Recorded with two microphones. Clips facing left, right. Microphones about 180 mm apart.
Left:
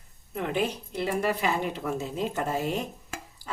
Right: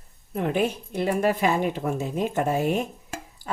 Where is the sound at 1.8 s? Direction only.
50° right (ahead or behind).